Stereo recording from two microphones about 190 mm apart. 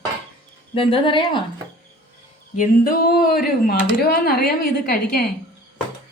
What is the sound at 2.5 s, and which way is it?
Speech, 45° left (ahead or behind).